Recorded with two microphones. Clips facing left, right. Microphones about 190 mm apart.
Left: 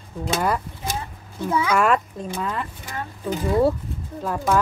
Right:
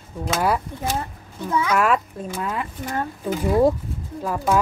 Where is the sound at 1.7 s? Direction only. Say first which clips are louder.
Even; 5° right (ahead or behind).